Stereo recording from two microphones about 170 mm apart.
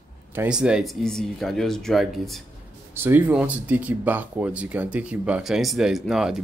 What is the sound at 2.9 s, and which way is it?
Speech, 10° right (ahead or behind).